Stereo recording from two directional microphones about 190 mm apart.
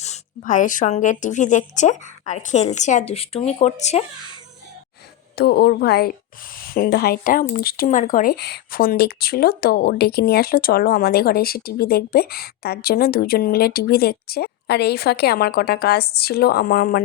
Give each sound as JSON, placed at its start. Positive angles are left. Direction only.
{"t": 0.0, "sound": "a woman's voice", "side_deg": 40}
{"t": 5.4, "sound": "a woman's voice", "side_deg": 60}